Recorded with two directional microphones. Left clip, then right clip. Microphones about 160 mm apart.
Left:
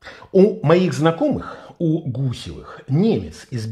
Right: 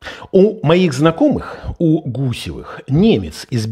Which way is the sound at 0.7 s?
25° right (ahead or behind).